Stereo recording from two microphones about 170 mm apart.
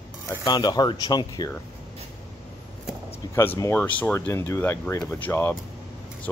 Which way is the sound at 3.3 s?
15° left (ahead or behind).